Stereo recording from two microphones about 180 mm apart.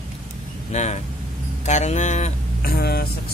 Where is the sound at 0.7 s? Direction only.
40° left (ahead or behind).